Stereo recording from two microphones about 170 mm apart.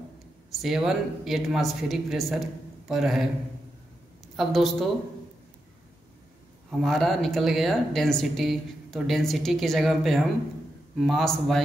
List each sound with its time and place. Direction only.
0.6 s speech: centre (ahead or behind)
4.4 s speech: centre (ahead or behind)
6.8 s speech: centre (ahead or behind)